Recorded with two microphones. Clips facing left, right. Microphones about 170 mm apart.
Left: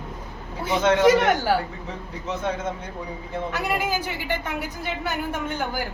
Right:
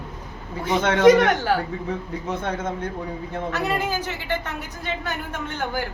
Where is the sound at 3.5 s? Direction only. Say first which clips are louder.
Right 1 dB; 10° left (ahead or behind).